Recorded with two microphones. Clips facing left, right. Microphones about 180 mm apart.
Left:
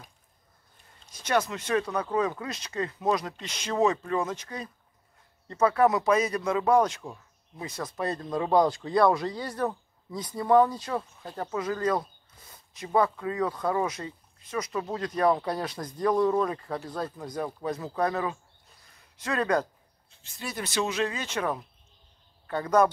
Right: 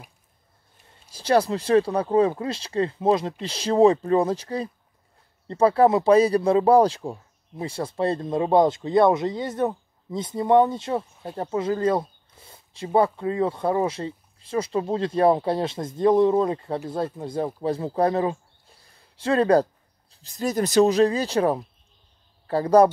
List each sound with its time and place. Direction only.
1.1 s speech: 30° right (ahead or behind)